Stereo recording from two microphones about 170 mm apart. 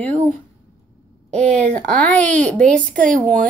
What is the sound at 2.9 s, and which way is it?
Female singing, 50° right (ahead or behind).